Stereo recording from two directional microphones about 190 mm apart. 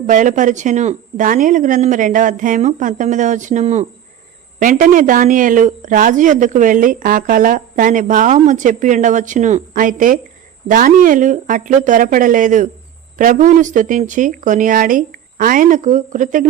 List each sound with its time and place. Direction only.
0.1 s speech: 40° right (ahead or behind)